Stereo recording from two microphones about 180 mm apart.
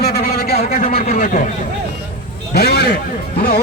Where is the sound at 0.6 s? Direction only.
40° left (ahead or behind).